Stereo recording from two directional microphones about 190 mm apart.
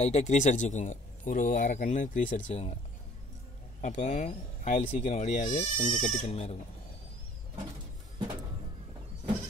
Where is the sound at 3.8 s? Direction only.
40° left (ahead or behind).